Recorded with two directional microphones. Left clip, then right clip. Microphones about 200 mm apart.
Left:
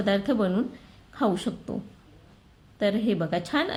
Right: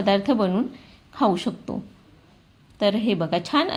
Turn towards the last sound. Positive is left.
turn(degrees=-5)  # may be behind; listen again after turning